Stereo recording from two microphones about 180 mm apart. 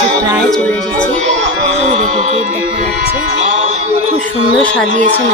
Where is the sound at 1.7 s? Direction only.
35° right (ahead or behind).